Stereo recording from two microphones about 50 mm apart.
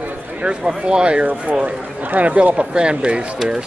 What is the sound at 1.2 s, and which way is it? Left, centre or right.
Speech, right.